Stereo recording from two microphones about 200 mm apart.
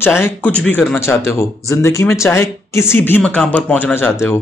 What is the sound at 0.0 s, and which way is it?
Speech, 10° left (ahead or behind).